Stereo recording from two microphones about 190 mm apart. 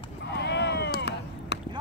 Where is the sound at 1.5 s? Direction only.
60° left (ahead or behind).